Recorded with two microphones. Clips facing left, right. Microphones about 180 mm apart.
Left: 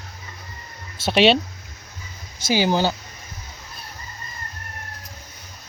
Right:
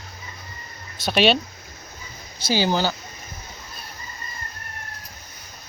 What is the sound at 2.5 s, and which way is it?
Speech, 15° left (ahead or behind).